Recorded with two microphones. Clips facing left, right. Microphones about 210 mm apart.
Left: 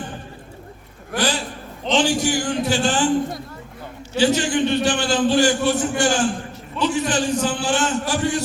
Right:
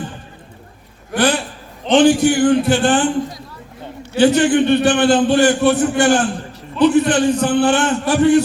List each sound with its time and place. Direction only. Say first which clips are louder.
1.1 s a man's voice: right 6 dB; 55° right (ahead or behind)
4.1 s a man's voice: right 6 dB; 55° right (ahead or behind)